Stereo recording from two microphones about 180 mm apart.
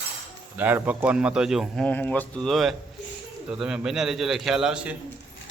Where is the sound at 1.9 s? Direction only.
10° left (ahead or behind).